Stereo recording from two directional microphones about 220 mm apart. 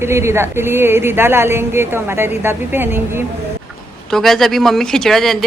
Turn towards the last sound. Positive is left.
turn(degrees=0)  # may be behind; listen again after turning